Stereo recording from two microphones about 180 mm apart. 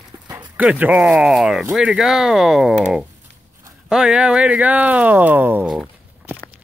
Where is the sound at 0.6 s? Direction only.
10° right (ahead or behind).